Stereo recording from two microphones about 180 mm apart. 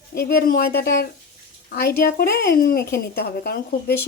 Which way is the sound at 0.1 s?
60° left (ahead or behind).